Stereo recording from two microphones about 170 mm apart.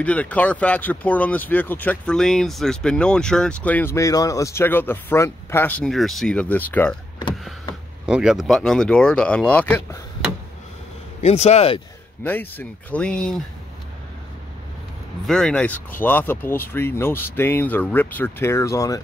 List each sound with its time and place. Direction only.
0.0 s speech: 10° left (ahead or behind)
8.1 s speech: 5° right (ahead or behind)
11.2 s speech: 40° left (ahead or behind)
12.2 s speech: 10° left (ahead or behind)
15.2 s speech: 5° left (ahead or behind)